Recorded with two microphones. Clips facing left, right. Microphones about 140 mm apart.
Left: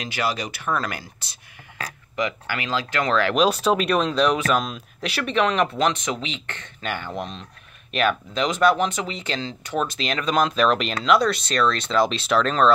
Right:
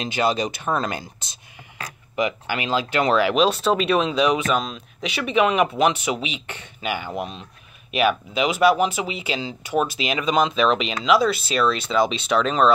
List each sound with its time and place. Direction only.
0.0 s speech: 25° right (ahead or behind)
3.3 s speech: centre (ahead or behind)